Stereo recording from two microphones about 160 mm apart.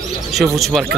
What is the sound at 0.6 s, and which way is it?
Speech, centre (ahead or behind).